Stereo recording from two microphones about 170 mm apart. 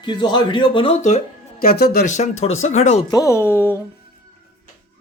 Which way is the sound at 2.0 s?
45° left (ahead or behind).